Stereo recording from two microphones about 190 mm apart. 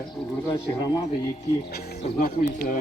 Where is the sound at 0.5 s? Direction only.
20° left (ahead or behind).